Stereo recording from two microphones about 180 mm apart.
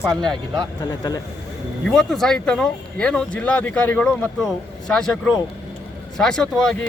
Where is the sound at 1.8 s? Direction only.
5° left (ahead or behind).